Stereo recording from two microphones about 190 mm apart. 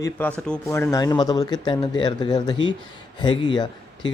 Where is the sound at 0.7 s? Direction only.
15° left (ahead or behind).